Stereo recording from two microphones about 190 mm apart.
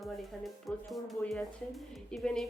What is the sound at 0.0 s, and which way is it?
Speech, centre (ahead or behind).